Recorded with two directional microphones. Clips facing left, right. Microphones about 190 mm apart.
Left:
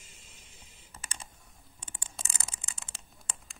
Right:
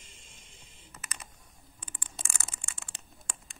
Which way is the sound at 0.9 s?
30° left (ahead or behind).